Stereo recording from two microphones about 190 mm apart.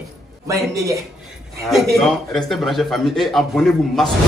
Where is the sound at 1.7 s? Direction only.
Centre (ahead or behind).